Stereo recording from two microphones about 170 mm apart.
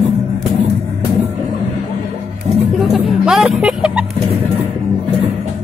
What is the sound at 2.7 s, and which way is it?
Music, centre (ahead or behind).